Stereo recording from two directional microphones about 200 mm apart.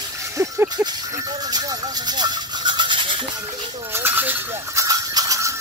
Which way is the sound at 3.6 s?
15° right (ahead or behind).